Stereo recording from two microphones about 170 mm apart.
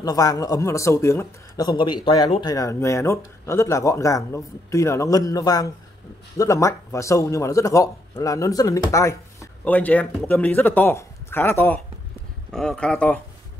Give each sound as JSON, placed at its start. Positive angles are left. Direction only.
{"t": 0.0, "sound": "speech", "side_deg": 20}